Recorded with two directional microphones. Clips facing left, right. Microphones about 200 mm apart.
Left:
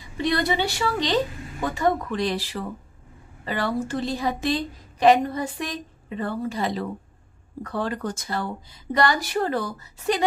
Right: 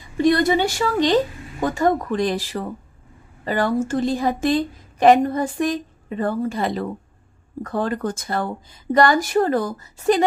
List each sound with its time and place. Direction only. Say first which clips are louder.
0.2 s a woman's voice: right 7 dB; 45° right (ahead or behind)